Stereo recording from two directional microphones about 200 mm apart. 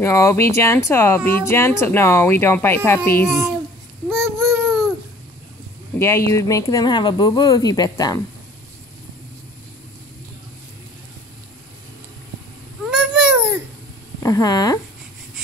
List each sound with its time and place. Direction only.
0.0 s speech: 15° left (ahead or behind)
4.1 s babbling: centre (ahead or behind)
5.9 s speech: 15° left (ahead or behind)
12.8 s babbling: 5° right (ahead or behind)
14.2 s speech: 20° left (ahead or behind)